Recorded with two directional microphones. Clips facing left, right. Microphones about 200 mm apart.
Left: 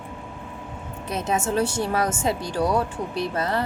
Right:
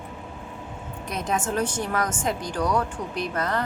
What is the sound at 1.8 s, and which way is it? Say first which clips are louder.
Speech: left 3 dB; 30° left (ahead or behind).